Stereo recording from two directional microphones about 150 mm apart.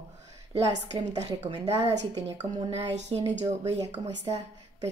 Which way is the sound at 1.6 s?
20° right (ahead or behind).